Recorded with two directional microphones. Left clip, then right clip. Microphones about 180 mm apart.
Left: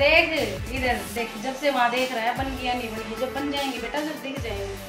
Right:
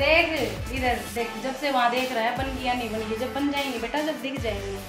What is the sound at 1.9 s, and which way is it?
Speech, 25° right (ahead or behind).